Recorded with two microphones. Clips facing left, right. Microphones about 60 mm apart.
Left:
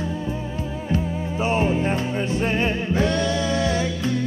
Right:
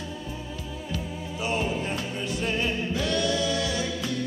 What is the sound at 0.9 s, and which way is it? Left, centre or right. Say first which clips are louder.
Music: left 10 dB; left.